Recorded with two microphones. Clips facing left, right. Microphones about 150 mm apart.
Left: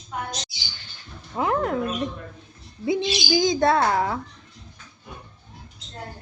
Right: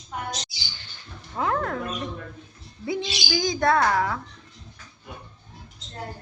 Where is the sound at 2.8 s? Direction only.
20° left (ahead or behind).